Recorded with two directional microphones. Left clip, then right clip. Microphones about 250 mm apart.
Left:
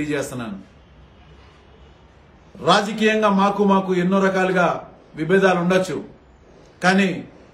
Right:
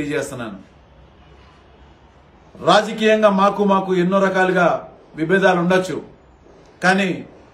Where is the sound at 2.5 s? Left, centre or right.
Centre.